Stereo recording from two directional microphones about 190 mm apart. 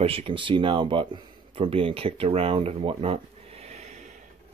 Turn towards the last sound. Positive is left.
turn(degrees=-35)  # may be behind; listen again after turning